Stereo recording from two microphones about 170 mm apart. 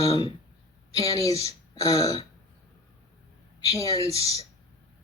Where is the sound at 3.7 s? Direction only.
20° left (ahead or behind).